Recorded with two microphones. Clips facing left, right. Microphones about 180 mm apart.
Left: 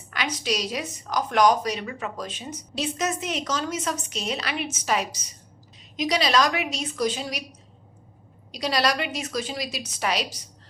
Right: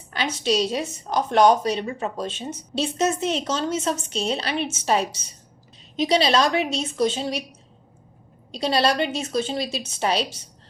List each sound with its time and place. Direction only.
0.1 s a woman's voice: 30° right (ahead or behind)
8.5 s a woman's voice: 30° right (ahead or behind)